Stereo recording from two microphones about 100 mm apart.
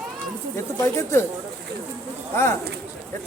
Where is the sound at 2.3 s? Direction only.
25° left (ahead or behind).